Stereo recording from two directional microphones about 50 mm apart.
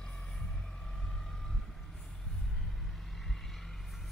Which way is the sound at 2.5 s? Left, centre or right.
Centre.